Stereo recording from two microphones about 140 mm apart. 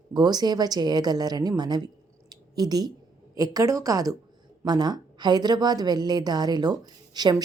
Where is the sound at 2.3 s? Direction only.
30° right (ahead or behind).